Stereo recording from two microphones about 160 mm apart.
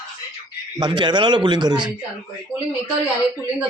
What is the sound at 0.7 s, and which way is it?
A man's voice, 30° right (ahead or behind).